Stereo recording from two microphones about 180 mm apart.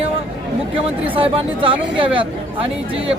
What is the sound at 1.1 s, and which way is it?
Speech, 30° right (ahead or behind).